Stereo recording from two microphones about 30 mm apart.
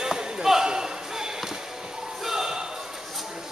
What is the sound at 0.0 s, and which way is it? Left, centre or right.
Basketball bounce, right.